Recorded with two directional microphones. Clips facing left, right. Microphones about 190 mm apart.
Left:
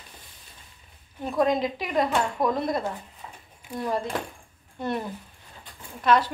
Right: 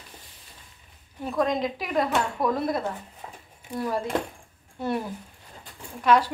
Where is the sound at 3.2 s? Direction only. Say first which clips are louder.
Right 2 dB; 35° right (ahead or behind).